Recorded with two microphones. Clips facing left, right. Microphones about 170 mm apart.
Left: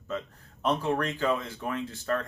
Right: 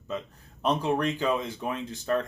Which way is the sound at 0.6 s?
20° right (ahead or behind).